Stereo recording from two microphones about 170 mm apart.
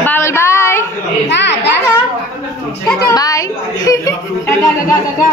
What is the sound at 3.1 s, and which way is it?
A woman's voice, 20° left (ahead or behind).